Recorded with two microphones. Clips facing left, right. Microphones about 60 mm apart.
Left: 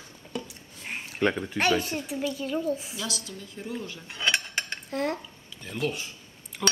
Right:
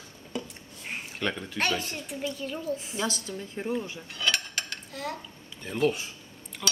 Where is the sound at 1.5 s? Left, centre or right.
Centre.